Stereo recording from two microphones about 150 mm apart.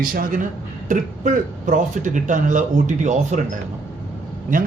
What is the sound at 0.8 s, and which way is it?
Speech, 55° right (ahead or behind).